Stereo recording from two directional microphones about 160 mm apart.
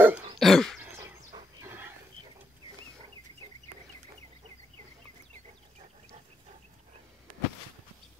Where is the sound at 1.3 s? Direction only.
15° right (ahead or behind).